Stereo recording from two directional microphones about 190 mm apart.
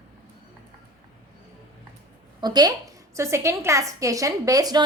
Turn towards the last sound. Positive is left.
turn(degrees=-20)  # may be behind; listen again after turning